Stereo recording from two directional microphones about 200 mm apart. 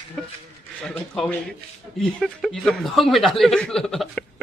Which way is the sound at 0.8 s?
5° left (ahead or behind).